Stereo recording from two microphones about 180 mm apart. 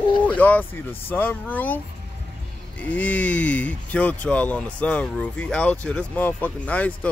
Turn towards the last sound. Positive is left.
turn(degrees=10)  # may be behind; listen again after turning